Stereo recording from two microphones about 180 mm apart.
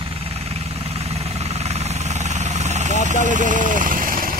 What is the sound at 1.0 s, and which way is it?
Vehicle, 35° right (ahead or behind).